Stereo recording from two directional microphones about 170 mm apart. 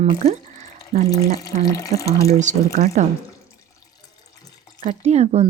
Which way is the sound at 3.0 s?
45° right (ahead or behind).